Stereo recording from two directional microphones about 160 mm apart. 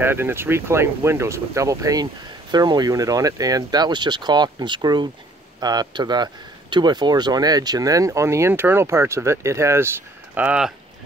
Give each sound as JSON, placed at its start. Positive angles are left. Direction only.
{"t": 0.0, "sound": "speech", "side_deg": -15}